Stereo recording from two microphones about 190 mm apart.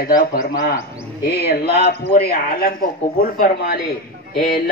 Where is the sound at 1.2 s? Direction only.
60° left (ahead or behind).